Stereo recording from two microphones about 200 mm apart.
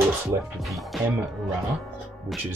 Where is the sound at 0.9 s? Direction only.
Centre (ahead or behind).